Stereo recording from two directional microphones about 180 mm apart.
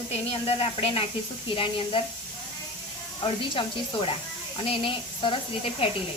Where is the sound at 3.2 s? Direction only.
30° left (ahead or behind).